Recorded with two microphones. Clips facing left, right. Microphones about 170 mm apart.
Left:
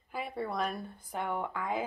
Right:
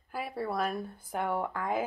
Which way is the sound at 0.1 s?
5° right (ahead or behind).